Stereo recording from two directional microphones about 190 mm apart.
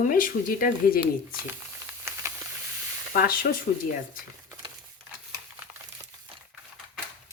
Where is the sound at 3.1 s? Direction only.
50° left (ahead or behind).